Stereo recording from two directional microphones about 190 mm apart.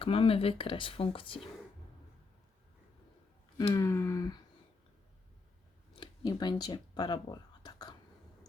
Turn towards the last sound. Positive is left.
turn(degrees=20)  # may be behind; listen again after turning